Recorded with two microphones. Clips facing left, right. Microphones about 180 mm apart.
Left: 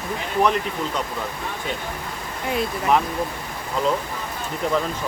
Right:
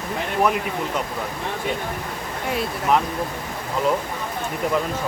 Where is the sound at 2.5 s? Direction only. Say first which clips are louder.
Left 1 dB; centre (ahead or behind).